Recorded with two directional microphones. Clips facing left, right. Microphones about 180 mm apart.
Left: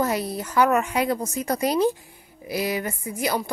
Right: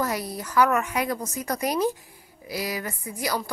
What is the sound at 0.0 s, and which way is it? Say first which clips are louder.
A woman's voice: left 4 dB; 25° left (ahead or behind).